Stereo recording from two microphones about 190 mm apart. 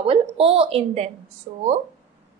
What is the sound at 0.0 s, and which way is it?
A woman's voice, 30° right (ahead or behind).